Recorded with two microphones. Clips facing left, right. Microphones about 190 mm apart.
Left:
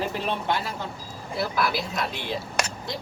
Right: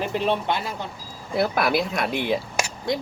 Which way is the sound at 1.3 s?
55° right (ahead or behind).